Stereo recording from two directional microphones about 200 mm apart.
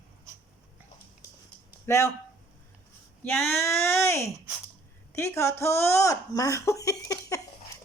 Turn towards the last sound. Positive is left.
turn(degrees=15)  # may be behind; listen again after turning